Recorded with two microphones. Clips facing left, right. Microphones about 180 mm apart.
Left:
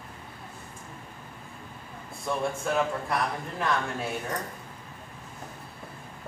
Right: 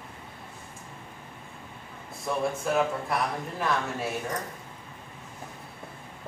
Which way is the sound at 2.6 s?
Centre (ahead or behind).